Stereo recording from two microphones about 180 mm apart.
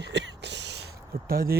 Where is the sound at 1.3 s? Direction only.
55° right (ahead or behind).